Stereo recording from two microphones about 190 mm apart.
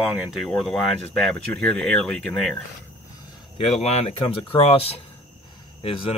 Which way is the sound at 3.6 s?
35° left (ahead or behind).